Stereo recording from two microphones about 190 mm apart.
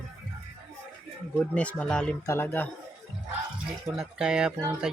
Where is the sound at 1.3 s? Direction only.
5° left (ahead or behind).